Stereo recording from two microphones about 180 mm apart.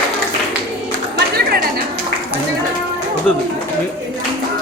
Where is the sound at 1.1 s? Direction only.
60° right (ahead or behind).